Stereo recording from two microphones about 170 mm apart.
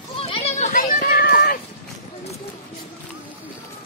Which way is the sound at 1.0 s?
65° left (ahead or behind).